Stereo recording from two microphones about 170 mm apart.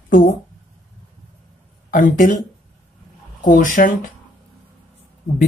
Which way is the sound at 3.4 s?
50° left (ahead or behind).